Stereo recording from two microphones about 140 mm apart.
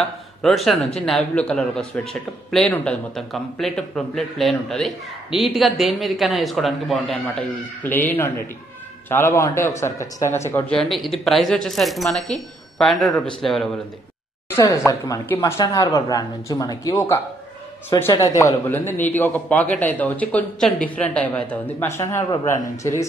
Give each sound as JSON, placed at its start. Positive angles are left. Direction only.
{"t": 0.4, "sound": "a man's voice", "side_deg": 0}
{"t": 7.8, "sound": "a man's voice", "side_deg": 15}
{"t": 10.7, "sound": "a man's voice", "side_deg": 0}
{"t": 14.5, "sound": "a woman's voice", "side_deg": 20}